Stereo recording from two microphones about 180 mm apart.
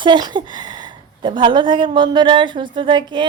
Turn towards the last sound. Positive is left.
turn(degrees=-25)  # may be behind; listen again after turning